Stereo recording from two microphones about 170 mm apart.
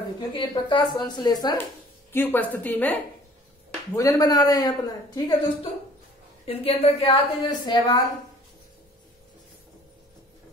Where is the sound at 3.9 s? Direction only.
20° left (ahead or behind).